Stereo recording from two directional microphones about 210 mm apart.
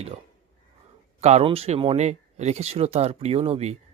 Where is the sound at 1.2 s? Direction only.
30° right (ahead or behind).